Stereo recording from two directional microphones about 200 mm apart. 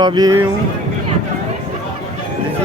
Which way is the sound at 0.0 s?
20° right (ahead or behind).